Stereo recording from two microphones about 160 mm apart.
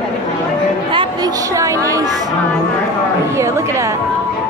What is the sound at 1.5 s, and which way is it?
Speech, 20° right (ahead or behind).